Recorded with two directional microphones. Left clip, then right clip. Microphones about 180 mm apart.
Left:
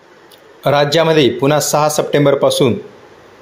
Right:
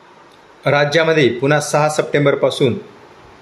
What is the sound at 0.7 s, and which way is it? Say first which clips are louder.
Speech: left 2 dB; 15° left (ahead or behind).